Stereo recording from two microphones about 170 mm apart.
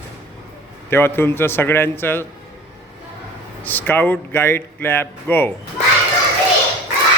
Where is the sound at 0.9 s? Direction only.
15° left (ahead or behind).